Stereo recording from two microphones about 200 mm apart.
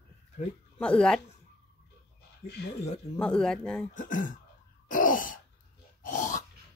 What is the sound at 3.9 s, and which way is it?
Speech, 40° left (ahead or behind).